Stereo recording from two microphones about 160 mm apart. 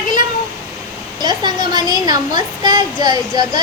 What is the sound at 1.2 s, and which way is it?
A child's voice, 25° right (ahead or behind).